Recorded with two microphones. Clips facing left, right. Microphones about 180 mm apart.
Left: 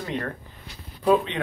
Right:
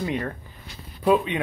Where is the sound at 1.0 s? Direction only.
10° right (ahead or behind).